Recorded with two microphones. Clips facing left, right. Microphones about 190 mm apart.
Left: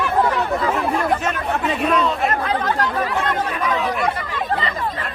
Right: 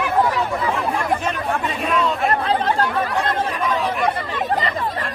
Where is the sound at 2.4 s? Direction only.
30° right (ahead or behind).